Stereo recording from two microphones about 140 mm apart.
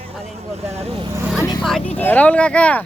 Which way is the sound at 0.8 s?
45° right (ahead or behind).